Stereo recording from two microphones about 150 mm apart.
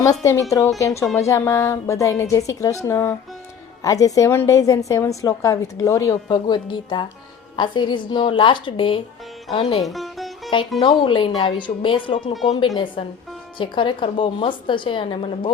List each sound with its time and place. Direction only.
0.0 s a woman's voice: 20° left (ahead or behind); by 9.8 s 40° left (ahead or behind)
9.8 s music: centre (ahead or behind)
10.8 s a woman's voice: 30° left (ahead or behind)